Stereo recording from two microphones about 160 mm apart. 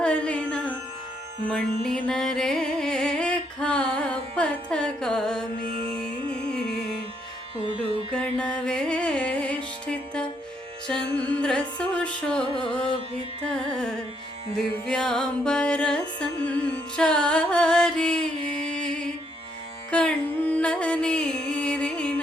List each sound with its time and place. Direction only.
0.0 s music: 5° left (ahead or behind)
5.6 s music: 35° right (ahead or behind)
7.8 s music: 5° left (ahead or behind)
13.5 s carnatic music: 5° left (ahead or behind)
14.5 s music: 5° left (ahead or behind)
19.9 s music: 5° left (ahead or behind)